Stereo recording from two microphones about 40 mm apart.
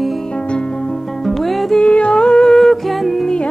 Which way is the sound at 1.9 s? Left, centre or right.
Left.